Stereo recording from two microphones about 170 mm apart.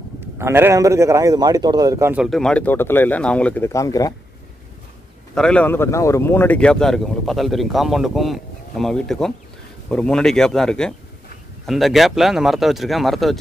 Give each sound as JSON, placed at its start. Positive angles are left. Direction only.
{"t": 0.2, "sound": "a man's voice", "side_deg": -15}
{"t": 2.2, "sound": "speech", "side_deg": 5}
{"t": 5.3, "sound": "speech", "side_deg": 5}